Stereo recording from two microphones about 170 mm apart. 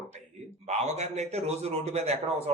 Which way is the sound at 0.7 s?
40° right (ahead or behind).